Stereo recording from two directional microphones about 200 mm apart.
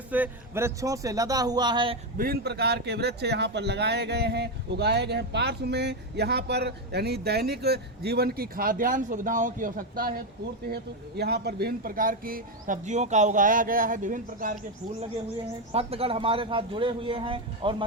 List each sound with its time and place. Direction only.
0.1 s speech: 10° right (ahead or behind)
2.1 s speech: 50° right (ahead or behind)
11.2 s speech: 55° right (ahead or behind)
15.7 s a man's voice: 30° right (ahead or behind)